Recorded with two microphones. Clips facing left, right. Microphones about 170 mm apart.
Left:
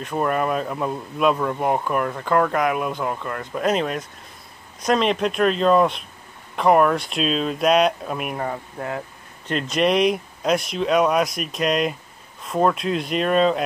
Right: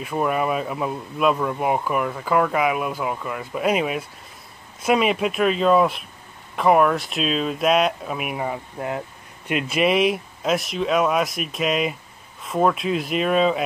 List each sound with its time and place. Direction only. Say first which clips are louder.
0.0 s speech: even; 5° right (ahead or behind)
8.7 s speech: right 1 dB; 20° right (ahead or behind)
9.5 s speech: even; 5° right (ahead or behind)